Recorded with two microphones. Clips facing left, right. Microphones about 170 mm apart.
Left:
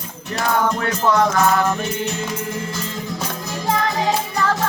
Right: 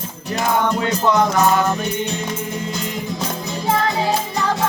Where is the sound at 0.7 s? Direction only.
20° right (ahead or behind).